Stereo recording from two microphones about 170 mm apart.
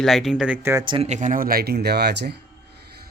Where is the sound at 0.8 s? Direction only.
30° right (ahead or behind).